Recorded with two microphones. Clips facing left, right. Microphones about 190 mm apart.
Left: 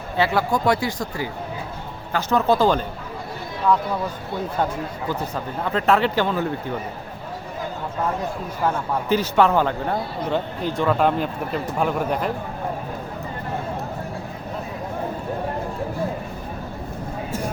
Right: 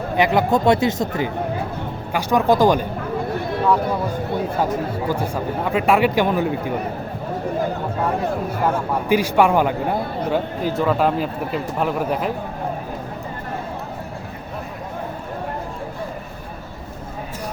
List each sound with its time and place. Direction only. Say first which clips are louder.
0.2 s speech: right 3 dB; 20° right (ahead or behind)
2.1 s a man's voice: right 2 dB; 15° right (ahead or behind)
5.7 s a man's voice: right 2 dB; 10° right (ahead or behind)
9.0 s a man's voice: right 2 dB; 10° right (ahead or behind)